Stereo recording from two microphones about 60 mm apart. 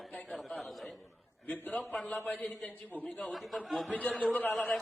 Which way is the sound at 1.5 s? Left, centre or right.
Left.